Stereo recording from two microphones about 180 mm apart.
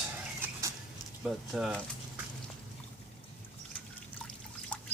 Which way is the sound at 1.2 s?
Centre (ahead or behind).